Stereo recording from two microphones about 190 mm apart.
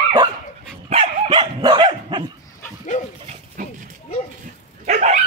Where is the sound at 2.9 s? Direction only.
40° left (ahead or behind).